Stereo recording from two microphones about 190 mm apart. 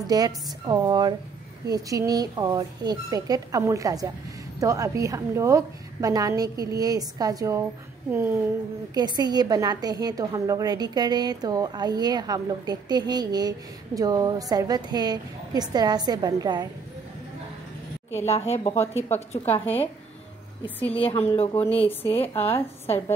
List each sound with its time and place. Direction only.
0.0 s a woman's voice: 20° right (ahead or behind)
8.9 s a woman's voice: 20° right (ahead or behind)
18.2 s a woman's voice: 35° left (ahead or behind)
20.6 s a woman's voice: 10° left (ahead or behind)
21.0 s a woman's voice: 30° left (ahead or behind)
21.5 s a woman's voice: 10° left (ahead or behind)
22.3 s a woman's voice: 30° left (ahead or behind)